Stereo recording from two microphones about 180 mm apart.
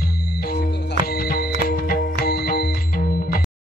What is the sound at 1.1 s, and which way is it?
Music, 55° left (ahead or behind).